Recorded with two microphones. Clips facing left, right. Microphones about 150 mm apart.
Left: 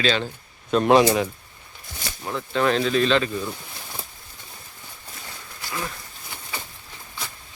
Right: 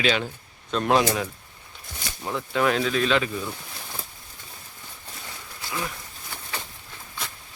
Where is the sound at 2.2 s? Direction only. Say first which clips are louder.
Left 1 dB; 10° right (ahead or behind).